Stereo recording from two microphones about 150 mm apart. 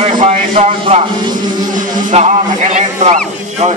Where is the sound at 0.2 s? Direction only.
45° right (ahead or behind).